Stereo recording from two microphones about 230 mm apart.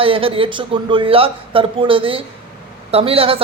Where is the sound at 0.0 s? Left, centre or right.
Right.